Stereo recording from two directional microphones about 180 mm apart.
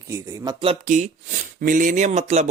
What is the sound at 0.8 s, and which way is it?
Speech, 45° right (ahead or behind).